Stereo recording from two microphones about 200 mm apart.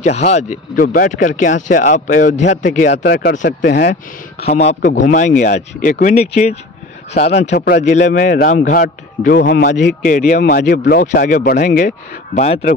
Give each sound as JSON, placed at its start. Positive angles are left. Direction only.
{"t": 0.0, "sound": "a man's voice", "side_deg": 35}
{"t": 2.9, "sound": "a man's voice", "side_deg": 60}
{"t": 4.6, "sound": "a man's voice", "side_deg": 35}
{"t": 7.5, "sound": "a man's voice", "side_deg": 50}
{"t": 7.8, "sound": "a man's voice", "side_deg": 35}
{"t": 10.0, "sound": "a man's voice", "side_deg": 40}